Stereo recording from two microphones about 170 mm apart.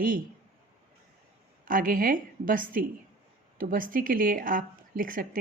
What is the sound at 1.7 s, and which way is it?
Speech, 55° right (ahead or behind).